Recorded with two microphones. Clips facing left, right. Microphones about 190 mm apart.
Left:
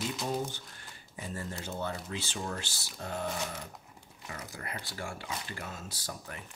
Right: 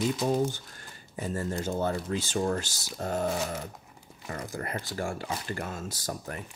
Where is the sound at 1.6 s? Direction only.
45° right (ahead or behind).